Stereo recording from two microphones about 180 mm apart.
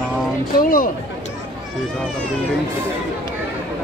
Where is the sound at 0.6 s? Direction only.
50° left (ahead or behind).